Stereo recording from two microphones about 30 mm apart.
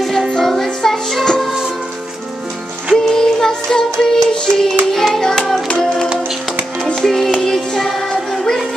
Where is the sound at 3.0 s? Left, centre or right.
Centre.